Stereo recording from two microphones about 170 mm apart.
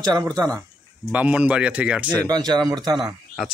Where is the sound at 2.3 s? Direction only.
25° right (ahead or behind).